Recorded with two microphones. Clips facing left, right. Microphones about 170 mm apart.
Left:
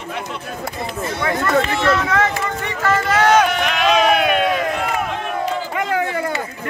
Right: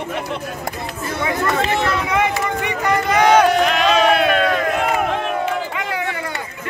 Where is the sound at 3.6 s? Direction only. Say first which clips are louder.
Right 1 dB; 5° left (ahead or behind).